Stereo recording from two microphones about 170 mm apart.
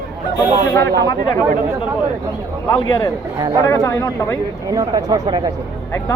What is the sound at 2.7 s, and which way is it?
A man's voice, 20° left (ahead or behind).